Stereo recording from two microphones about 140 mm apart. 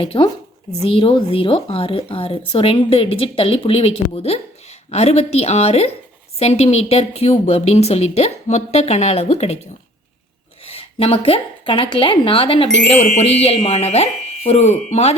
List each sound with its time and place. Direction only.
0.0 s a woman's voice: 40° left (ahead or behind)
10.7 s a woman's voice: 45° left (ahead or behind)